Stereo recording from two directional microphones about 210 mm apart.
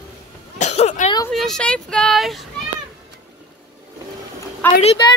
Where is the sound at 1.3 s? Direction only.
Centre (ahead or behind).